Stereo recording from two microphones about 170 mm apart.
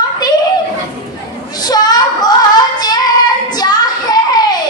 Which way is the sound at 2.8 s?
25° left (ahead or behind).